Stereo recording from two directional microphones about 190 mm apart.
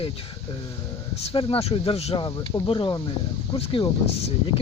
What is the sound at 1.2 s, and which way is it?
Speech, 30° left (ahead or behind).